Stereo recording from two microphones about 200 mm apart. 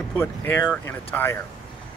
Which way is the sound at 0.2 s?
10° left (ahead or behind).